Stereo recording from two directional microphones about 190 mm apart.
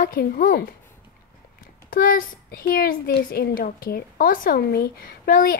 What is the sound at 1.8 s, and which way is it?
A woman's voice, 45° left (ahead or behind).